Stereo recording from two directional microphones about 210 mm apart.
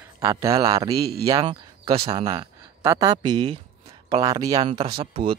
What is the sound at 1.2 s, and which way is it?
Speech, 15° right (ahead or behind).